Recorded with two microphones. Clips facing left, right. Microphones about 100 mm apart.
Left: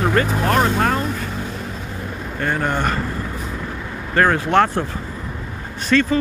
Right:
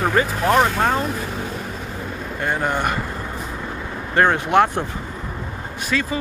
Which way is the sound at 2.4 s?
15° right (ahead or behind).